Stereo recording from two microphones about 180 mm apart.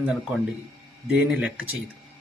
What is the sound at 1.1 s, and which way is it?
Speech, 5° right (ahead or behind).